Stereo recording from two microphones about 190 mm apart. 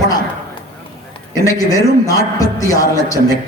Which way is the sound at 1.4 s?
15° left (ahead or behind).